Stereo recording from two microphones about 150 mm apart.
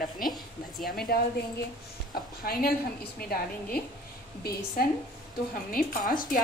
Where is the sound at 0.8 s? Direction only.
85° left.